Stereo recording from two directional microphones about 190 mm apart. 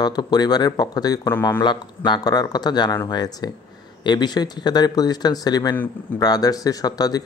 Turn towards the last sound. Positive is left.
turn(degrees=20)  # may be behind; listen again after turning